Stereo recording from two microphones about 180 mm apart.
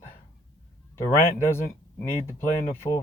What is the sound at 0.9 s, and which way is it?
A man's voice, 15° left (ahead or behind).